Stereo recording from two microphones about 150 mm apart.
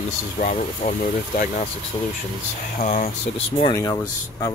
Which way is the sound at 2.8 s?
50° left (ahead or behind).